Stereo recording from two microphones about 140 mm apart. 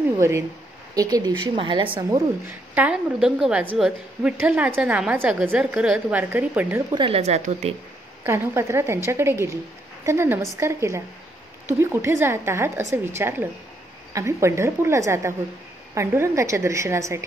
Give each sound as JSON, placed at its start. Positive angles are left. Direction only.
{"t": 0.9, "sound": "speech", "side_deg": -25}
{"t": 2.0, "sound": "a woman's voice", "side_deg": -20}
{"t": 6.9, "sound": "speech", "side_deg": -40}
{"t": 8.2, "sound": "a woman's voice", "side_deg": -20}